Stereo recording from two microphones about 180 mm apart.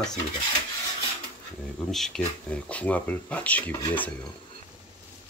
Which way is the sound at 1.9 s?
Centre (ahead or behind).